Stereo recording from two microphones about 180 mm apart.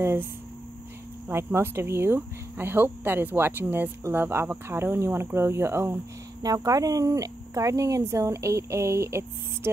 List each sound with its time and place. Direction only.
0.0 s speech: 15° right (ahead or behind)
1.3 s speech: 15° right (ahead or behind)